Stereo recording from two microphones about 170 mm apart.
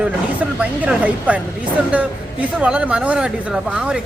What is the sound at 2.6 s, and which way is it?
Speech, 5° right (ahead or behind).